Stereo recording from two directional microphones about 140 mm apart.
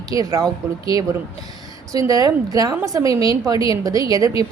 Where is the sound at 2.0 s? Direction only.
25° right (ahead or behind).